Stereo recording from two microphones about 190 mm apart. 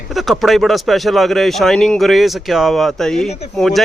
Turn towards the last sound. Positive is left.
turn(degrees=0)  # may be behind; listen again after turning